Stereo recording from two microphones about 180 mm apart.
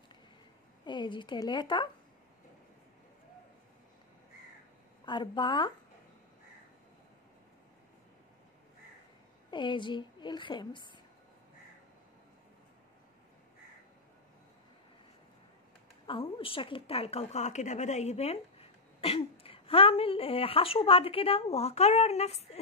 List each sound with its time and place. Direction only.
0.8 s a woman's voice: 25° left (ahead or behind)
5.0 s a woman's voice: 25° left (ahead or behind)
9.5 s a woman's voice: 25° left (ahead or behind)
16.1 s a woman's voice: 30° left (ahead or behind)